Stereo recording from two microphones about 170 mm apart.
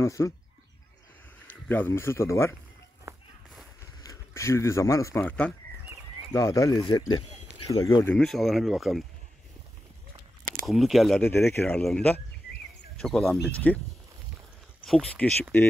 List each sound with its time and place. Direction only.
0.0 s speech: 15° left (ahead or behind)
1.5 s speech: 10° left (ahead or behind)
4.0 s speech: 20° left (ahead or behind)
6.3 s speech: 20° left (ahead or behind)
8.2 s speech: centre (ahead or behind)
10.7 s speech: centre (ahead or behind)
14.9 s speech: 5° left (ahead or behind)